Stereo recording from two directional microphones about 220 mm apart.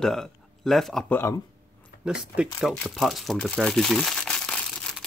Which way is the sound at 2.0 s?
5° right (ahead or behind).